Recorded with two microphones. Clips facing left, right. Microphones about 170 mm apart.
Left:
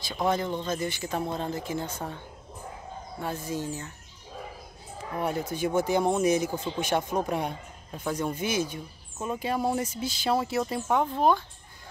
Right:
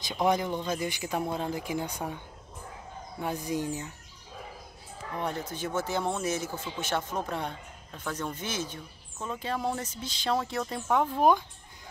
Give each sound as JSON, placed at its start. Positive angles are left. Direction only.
{"t": 0.0, "sound": "speech", "side_deg": -15}
{"t": 5.1, "sound": "speech", "side_deg": 10}
{"t": 11.1, "sound": "speech", "side_deg": -15}